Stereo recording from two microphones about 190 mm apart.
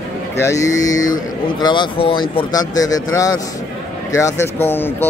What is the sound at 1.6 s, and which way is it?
Speech, 25° left (ahead or behind).